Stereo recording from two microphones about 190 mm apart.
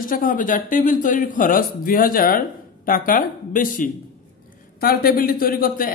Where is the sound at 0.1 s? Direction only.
45° left (ahead or behind).